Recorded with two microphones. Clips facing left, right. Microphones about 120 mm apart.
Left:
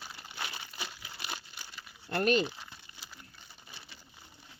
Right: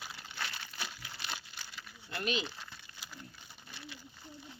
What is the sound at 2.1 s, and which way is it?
Speech, 50° left (ahead or behind).